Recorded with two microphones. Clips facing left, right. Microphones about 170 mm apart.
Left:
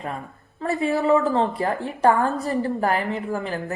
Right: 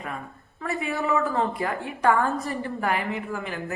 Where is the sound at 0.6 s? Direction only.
30° left (ahead or behind).